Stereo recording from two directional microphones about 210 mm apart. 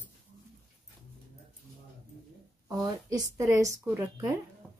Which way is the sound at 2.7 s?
15° right (ahead or behind).